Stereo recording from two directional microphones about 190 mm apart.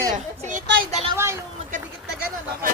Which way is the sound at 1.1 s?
15° right (ahead or behind).